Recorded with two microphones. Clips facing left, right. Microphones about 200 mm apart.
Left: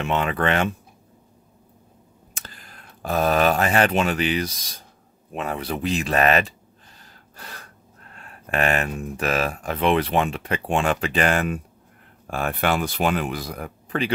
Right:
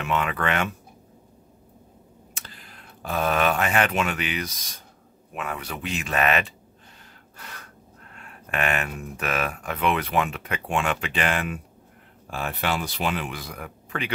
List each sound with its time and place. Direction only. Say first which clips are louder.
0.0 s speech: left 3 dB; 30° left (ahead or behind)
2.3 s speech: left 3 dB; 45° left (ahead or behind)
7.3 s gasp: left 2 dB; 35° left (ahead or behind)
8.2 s speech: left 4 dB; 35° left (ahead or behind)
12.3 s speech: left 5 dB; 50° left (ahead or behind); by 14.1 s 35° left (ahead or behind)